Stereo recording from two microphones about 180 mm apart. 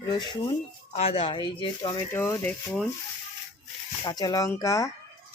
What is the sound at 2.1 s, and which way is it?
Speech, 10° left (ahead or behind).